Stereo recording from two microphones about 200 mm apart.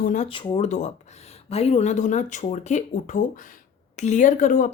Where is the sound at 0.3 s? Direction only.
25° left (ahead or behind).